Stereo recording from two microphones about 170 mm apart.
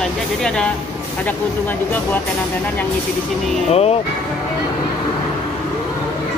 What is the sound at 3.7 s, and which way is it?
Speech, 35° left (ahead or behind).